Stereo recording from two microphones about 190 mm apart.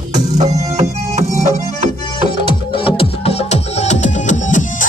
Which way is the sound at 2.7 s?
25° left (ahead or behind).